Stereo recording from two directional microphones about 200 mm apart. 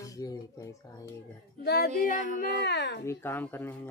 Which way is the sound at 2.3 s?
60° left (ahead or behind).